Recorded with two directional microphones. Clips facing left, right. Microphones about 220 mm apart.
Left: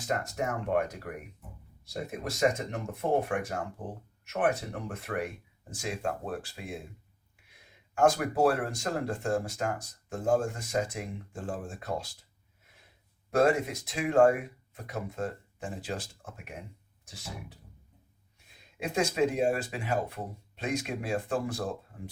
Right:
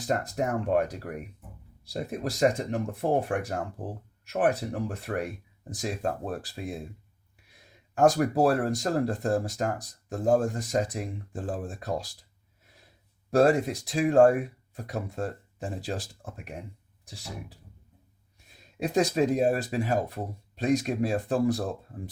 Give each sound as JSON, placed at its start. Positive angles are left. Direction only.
{"t": 0.0, "sound": "speech", "side_deg": -35}
{"t": 7.9, "sound": "speech", "side_deg": -35}
{"t": 13.3, "sound": "speech", "side_deg": -35}
{"t": 18.8, "sound": "speech", "side_deg": -35}